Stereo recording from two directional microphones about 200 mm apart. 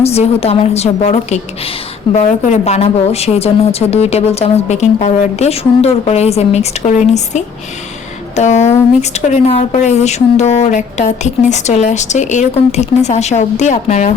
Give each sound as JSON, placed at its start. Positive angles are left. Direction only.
{"t": 0.0, "sound": "speech", "side_deg": 30}